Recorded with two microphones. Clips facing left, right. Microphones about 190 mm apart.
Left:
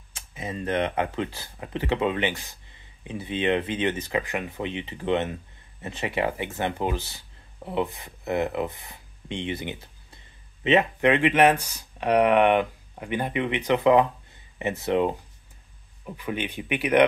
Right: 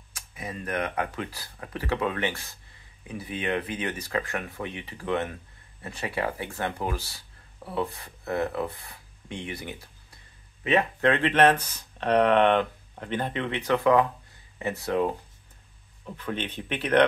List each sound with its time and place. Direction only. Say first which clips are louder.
0.1 s speech: left 3 dB; 25° left (ahead or behind)
16.1 s a man's voice: left 2 dB; 10° left (ahead or behind)